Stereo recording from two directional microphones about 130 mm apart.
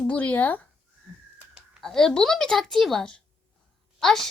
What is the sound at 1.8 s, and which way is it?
A woman's voice, 5° left (ahead or behind).